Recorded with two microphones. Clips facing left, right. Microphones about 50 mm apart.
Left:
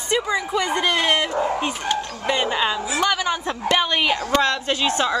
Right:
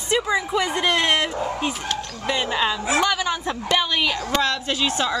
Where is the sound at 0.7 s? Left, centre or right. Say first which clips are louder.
Left 1 dB; centre.